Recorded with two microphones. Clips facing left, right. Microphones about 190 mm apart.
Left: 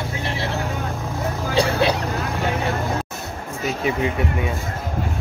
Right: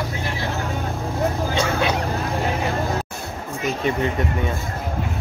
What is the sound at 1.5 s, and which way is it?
Speech, 35° left (ahead or behind).